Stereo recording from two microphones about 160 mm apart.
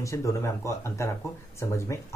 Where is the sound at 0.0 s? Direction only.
20° left (ahead or behind).